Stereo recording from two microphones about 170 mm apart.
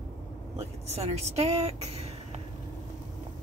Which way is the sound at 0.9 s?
40° right (ahead or behind).